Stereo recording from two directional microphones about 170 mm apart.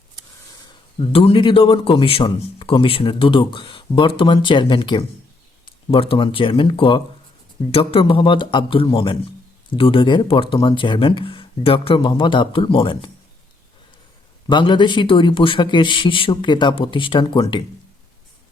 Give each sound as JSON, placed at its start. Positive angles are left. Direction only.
{"t": 0.9, "sound": "a man's voice", "side_deg": 30}
{"t": 14.5, "sound": "speech", "side_deg": 25}